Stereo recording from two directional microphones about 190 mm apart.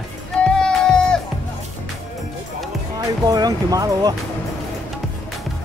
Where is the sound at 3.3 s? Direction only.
20° right (ahead or behind).